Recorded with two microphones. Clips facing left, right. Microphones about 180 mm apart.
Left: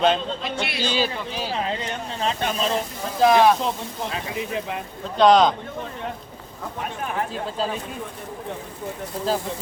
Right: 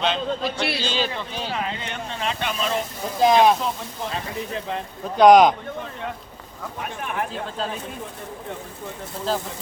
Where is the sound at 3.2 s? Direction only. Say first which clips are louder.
Even; 20° right (ahead or behind).